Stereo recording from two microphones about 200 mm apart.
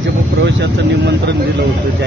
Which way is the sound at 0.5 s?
60° right (ahead or behind).